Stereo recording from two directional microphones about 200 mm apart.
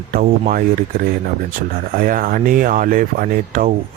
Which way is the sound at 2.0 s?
45° right (ahead or behind).